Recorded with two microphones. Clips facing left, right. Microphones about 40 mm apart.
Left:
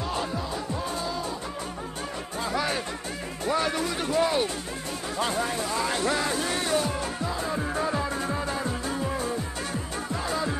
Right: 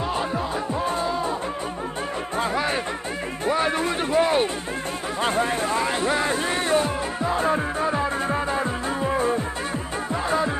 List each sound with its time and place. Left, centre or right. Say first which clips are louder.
0.8 s music: right 6 dB; right
2.5 s music: right 4 dB; right
3.8 s a sound: right 4 dB; right
5.2 s speech: right 5 dB; right
5.9 s music: right 4 dB; right
7.7 s music: right 4 dB; right